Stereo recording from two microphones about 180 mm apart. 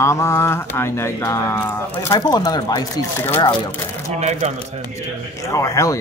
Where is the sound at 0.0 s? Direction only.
15° left (ahead or behind).